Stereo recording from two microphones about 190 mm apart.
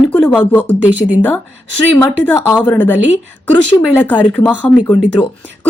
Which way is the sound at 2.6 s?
10° left (ahead or behind).